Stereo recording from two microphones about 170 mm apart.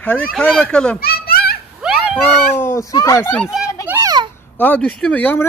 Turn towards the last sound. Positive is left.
turn(degrees=10)  # may be behind; listen again after turning